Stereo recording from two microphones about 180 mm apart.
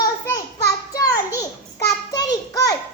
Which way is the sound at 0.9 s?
20° left (ahead or behind).